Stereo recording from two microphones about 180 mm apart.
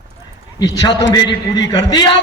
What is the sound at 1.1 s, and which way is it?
Speech, 25° left (ahead or behind).